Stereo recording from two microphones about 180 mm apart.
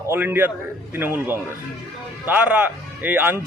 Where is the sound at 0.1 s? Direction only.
10° right (ahead or behind).